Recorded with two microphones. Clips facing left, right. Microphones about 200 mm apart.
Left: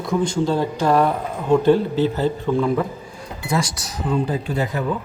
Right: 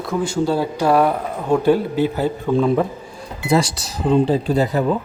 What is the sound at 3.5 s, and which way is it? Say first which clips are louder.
Speech: right 5 dB; 30° right (ahead or behind).